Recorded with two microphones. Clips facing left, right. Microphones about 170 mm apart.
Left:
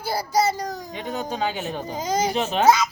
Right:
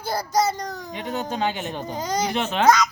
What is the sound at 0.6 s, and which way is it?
Speech, 35° left (ahead or behind).